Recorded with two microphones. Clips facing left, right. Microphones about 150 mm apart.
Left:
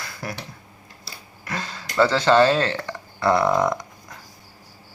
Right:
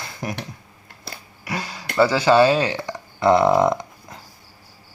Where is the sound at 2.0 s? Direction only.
10° right (ahead or behind).